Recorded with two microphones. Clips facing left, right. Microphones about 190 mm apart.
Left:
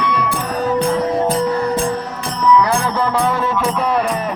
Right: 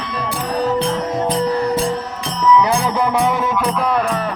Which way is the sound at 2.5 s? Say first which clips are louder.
Right 1 dB; 15° right (ahead or behind).